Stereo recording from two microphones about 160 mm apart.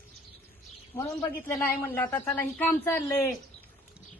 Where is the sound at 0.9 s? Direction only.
10° left (ahead or behind).